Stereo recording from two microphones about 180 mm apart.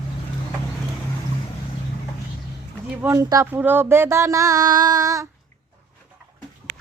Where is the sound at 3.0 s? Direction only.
15° right (ahead or behind).